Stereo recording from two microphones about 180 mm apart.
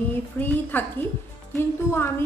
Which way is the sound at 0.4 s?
10° left (ahead or behind).